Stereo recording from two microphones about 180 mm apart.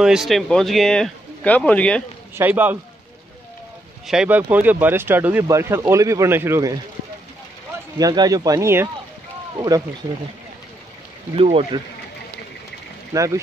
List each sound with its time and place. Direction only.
0.0 s speech: 5° right (ahead or behind)
2.3 s speech: 10° right (ahead or behind)
4.1 s speech: 5° right (ahead or behind)
8.0 s speech: 20° right (ahead or behind)
11.3 s speech: 30° right (ahead or behind)
13.1 s speech: 15° right (ahead or behind)